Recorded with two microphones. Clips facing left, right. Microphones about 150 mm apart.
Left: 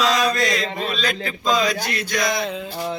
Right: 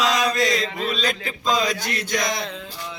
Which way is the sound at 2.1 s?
15° right (ahead or behind).